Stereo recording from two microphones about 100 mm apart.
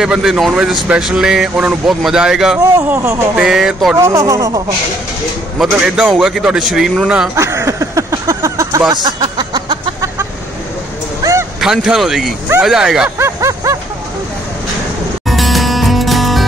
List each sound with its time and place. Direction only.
0.0 s a man's voice: 5° right (ahead or behind)
2.6 s a sound: 30° right (ahead or behind)
3.3 s a man's voice: 5° right (ahead or behind)
3.9 s speech: 30° right (ahead or behind)
5.6 s a man's voice: 5° right (ahead or behind)
7.3 s a sound: 30° right (ahead or behind); by 9.9 s 50° right (ahead or behind)
11.6 s a man's voice: 5° right (ahead or behind)
13.2 s a sound: 30° right (ahead or behind)
15.2 s music: centre (ahead or behind)